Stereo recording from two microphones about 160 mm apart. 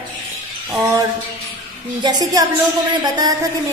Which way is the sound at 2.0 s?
25° right (ahead or behind).